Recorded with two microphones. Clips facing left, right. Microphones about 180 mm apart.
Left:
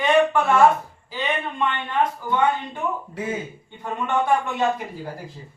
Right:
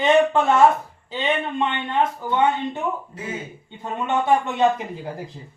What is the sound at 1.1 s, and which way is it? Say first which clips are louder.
Speech: right 3 dB; 25° right (ahead or behind).